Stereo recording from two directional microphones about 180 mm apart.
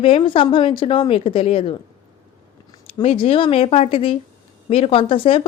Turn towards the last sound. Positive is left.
turn(degrees=30)  # may be behind; listen again after turning